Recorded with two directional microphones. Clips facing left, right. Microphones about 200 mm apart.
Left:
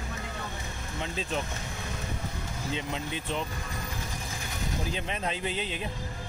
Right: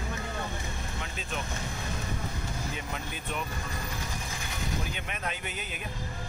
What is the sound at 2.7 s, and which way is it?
Speech, 25° left (ahead or behind).